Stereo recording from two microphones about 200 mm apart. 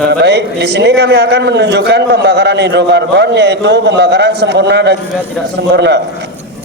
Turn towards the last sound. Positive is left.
turn(degrees=-60)  # may be behind; listen again after turning